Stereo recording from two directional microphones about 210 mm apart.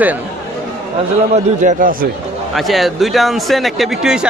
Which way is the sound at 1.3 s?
35° right (ahead or behind).